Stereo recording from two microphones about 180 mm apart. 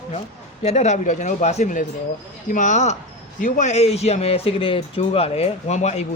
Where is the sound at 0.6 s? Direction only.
40° left (ahead or behind).